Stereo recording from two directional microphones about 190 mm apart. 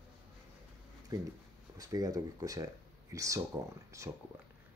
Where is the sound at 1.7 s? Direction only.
20° right (ahead or behind).